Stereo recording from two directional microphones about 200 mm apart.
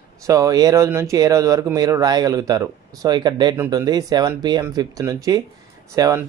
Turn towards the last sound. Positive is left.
turn(degrees=-15)  # may be behind; listen again after turning